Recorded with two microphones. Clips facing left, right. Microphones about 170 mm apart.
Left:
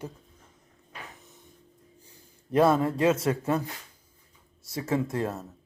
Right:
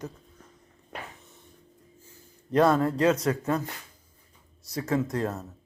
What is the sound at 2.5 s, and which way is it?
Speech, 5° left (ahead or behind).